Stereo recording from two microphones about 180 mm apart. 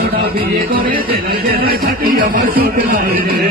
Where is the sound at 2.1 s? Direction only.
55° right (ahead or behind).